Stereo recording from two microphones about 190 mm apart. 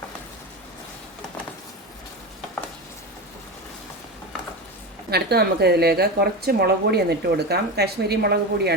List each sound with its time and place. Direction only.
5.1 s a woman's voice: 55° right (ahead or behind)